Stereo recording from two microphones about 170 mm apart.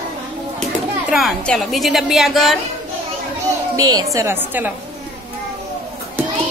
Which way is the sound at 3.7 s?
20° right (ahead or behind).